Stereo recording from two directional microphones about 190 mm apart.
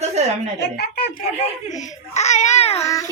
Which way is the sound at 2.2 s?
35° left (ahead or behind).